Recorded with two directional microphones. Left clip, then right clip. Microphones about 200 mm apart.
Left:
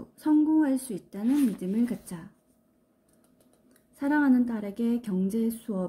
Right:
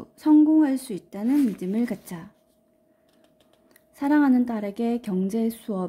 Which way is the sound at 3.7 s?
45° right (ahead or behind).